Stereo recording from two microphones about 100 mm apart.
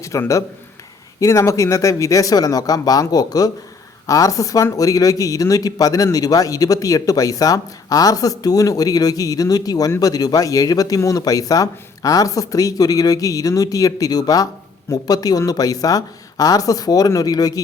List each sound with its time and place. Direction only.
0.0 s speech: 30° left (ahead or behind)